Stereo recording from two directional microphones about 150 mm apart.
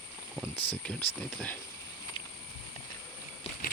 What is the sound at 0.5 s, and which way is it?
Speech, 40° left (ahead or behind).